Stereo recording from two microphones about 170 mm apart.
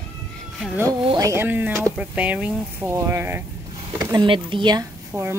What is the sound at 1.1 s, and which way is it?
Speech, 20° right (ahead or behind).